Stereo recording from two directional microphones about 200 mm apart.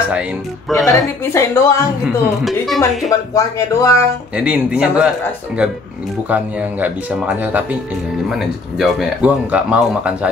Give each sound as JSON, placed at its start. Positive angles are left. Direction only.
{"t": 0.1, "sound": "speech", "side_deg": -5}
{"t": 1.3, "sound": "speech", "side_deg": 15}
{"t": 2.4, "sound": "speech", "side_deg": 0}
{"t": 3.1, "sound": "speech", "side_deg": 15}
{"t": 4.4, "sound": "speech", "side_deg": -5}